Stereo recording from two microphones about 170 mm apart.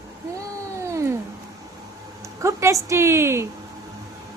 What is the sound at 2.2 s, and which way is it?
Speech, 15° right (ahead or behind).